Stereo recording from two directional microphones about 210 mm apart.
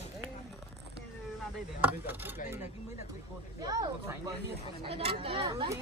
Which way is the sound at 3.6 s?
20° right (ahead or behind).